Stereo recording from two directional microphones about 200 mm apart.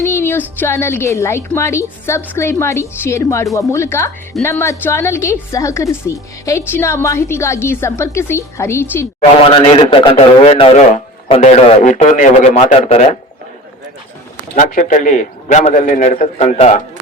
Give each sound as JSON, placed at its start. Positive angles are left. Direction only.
{"t": 0.0, "sound": "a woman's voice", "side_deg": 10}
{"t": 9.4, "sound": "a man's voice", "side_deg": 25}
{"t": 14.5, "sound": "a man's voice", "side_deg": 40}